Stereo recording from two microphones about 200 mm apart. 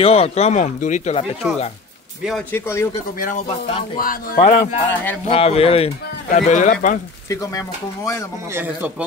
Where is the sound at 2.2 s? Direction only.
5° left (ahead or behind).